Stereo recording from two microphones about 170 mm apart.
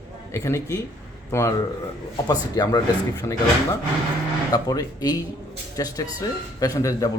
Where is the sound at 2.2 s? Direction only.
25° left (ahead or behind).